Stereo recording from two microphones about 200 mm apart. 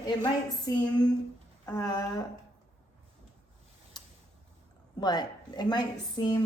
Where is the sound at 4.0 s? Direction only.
20° left (ahead or behind).